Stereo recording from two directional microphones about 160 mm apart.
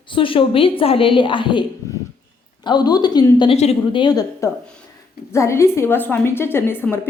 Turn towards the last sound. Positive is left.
turn(degrees=15)  # may be behind; listen again after turning